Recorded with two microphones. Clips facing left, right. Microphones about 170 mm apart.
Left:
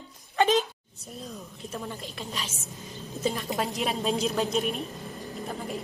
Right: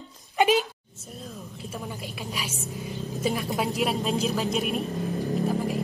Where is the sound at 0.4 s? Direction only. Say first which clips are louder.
Right 1 dB; 10° right (ahead or behind).